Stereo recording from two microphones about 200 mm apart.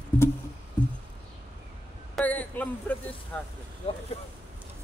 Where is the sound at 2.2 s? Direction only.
10° left (ahead or behind).